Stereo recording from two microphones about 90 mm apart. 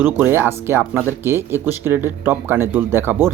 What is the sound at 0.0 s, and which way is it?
Speech, 25° right (ahead or behind).